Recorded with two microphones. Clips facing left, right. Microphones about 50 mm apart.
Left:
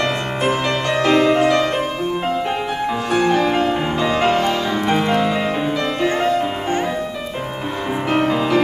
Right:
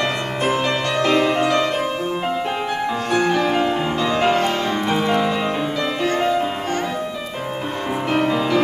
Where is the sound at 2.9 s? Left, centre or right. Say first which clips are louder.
Left 2 dB; left.